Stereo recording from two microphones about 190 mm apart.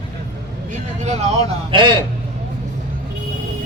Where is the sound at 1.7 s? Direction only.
25° right (ahead or behind).